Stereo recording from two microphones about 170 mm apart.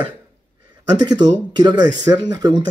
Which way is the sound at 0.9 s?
25° right (ahead or behind).